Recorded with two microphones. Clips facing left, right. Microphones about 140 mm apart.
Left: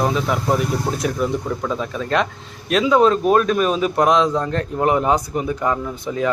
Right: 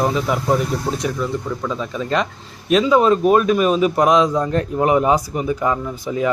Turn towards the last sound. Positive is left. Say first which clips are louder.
# right 1 dB
turn(degrees=-5)  # may be behind; listen again after turning